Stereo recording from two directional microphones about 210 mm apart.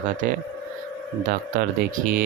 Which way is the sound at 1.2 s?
40° right (ahead or behind).